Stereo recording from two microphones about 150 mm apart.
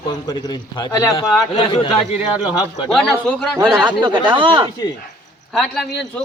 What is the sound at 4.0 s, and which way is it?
Speech, 30° right (ahead or behind).